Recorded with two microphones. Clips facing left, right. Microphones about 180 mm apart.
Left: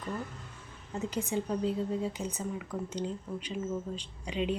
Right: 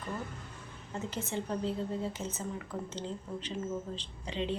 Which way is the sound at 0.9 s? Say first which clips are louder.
Left 4 dB; 15° left (ahead or behind).